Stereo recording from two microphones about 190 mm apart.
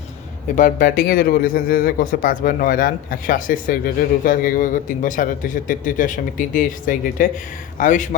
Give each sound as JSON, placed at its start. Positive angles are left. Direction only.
{"t": 0.4, "sound": "a man's voice", "side_deg": 40}